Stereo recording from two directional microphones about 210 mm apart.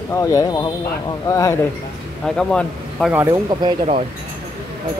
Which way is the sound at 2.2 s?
5° left (ahead or behind).